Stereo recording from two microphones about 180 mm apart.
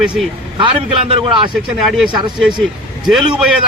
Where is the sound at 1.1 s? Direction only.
30° right (ahead or behind).